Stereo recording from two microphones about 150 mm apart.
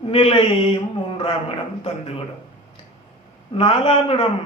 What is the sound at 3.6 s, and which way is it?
Speech, 40° left (ahead or behind).